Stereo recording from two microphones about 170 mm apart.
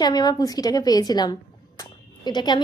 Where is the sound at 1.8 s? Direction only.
25° left (ahead or behind).